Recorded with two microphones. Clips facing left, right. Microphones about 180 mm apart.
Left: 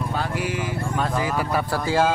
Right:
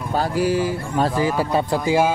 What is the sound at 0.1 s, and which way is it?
Speech, 35° right (ahead or behind).